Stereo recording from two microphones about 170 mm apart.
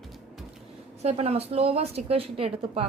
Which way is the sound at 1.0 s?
40° right (ahead or behind).